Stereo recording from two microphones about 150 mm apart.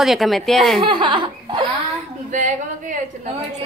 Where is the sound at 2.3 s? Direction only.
55° right (ahead or behind).